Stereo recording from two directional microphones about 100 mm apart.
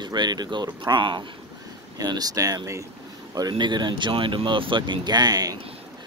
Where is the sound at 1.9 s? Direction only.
40° right (ahead or behind).